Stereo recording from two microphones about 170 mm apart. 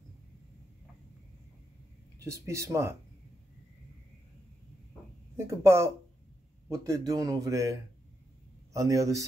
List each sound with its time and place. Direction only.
2.1 s speech: 15° right (ahead or behind)
5.3 s speech: 15° right (ahead or behind)